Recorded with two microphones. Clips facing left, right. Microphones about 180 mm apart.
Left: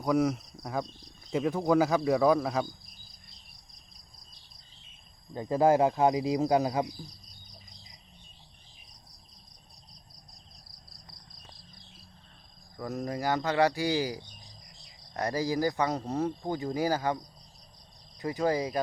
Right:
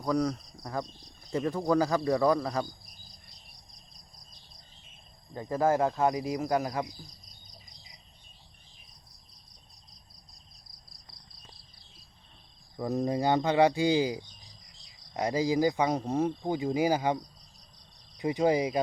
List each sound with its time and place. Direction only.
0.0 s speech: 5° left (ahead or behind)
5.3 s speech: 20° left (ahead or behind)
12.7 s speech: 20° right (ahead or behind)
18.2 s speech: 20° right (ahead or behind)